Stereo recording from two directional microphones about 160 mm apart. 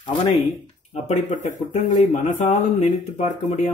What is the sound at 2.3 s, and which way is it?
Speech, 45° left (ahead or behind).